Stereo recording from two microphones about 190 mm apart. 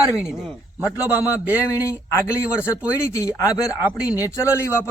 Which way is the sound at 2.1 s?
15° left (ahead or behind).